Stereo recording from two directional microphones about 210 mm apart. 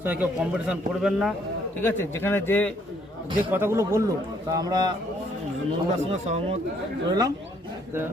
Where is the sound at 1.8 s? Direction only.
10° left (ahead or behind).